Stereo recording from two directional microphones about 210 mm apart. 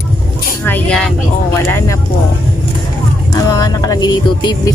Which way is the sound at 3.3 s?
15° left (ahead or behind).